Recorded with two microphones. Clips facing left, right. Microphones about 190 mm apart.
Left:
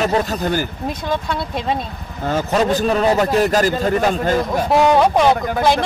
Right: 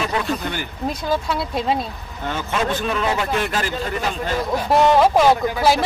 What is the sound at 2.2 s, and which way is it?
A man's voice, 40° left (ahead or behind).